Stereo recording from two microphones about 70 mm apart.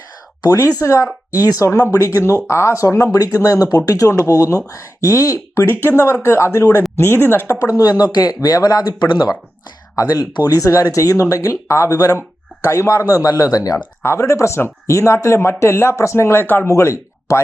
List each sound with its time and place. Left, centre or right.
0.8 s speech: left
2.0 s speech: left
6.2 s speech: left
7.6 s speech: left
9.9 s speech: left
12.6 s speech: left
13.1 s speech: left
14.0 s speech: left
16.6 s speech: left